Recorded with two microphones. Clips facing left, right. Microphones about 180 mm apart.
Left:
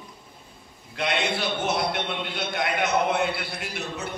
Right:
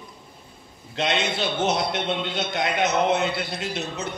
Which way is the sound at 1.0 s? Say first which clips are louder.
Right 2 dB; 20° right (ahead or behind).